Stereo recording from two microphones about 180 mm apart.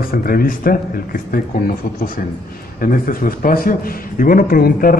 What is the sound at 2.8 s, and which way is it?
A man's voice, 50° left (ahead or behind).